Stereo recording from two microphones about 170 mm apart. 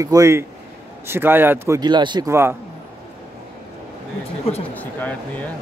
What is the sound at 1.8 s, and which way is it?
Speech, 25° right (ahead or behind).